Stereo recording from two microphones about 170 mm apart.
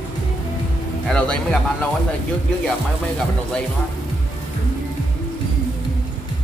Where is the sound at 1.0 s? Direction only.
5° left (ahead or behind).